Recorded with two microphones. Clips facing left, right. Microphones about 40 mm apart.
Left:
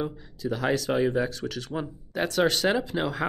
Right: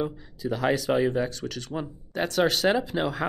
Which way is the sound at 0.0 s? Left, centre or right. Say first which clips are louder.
Right 1 dB; centre.